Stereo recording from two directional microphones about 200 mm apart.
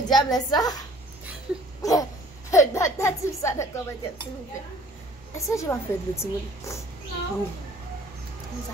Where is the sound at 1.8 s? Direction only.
15° left (ahead or behind).